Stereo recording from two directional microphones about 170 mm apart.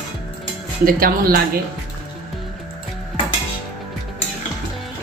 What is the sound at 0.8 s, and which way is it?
Speech, 60° right (ahead or behind).